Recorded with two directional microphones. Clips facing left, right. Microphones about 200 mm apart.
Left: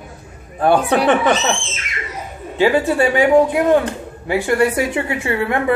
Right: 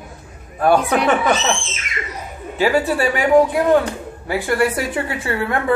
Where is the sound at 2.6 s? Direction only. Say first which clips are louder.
Left 2 dB; 25° left (ahead or behind).